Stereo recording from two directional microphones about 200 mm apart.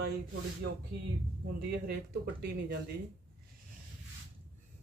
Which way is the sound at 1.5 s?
55° right (ahead or behind).